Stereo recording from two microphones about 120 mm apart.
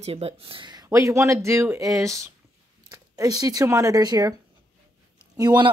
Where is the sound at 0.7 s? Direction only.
30° right (ahead or behind).